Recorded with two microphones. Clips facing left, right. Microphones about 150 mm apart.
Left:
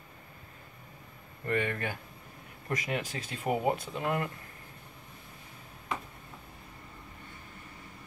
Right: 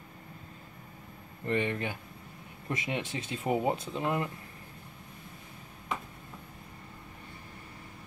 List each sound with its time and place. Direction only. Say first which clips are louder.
1.4 s speech: right 1 dB; 20° right (ahead or behind)